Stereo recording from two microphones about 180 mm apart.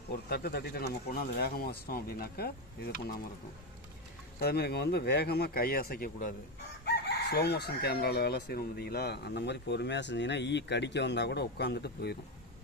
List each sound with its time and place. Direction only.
0.3 s speech: 60° left (ahead or behind)
4.4 s speech: 60° left (ahead or behind)
6.8 s chicken: 65° left (ahead or behind)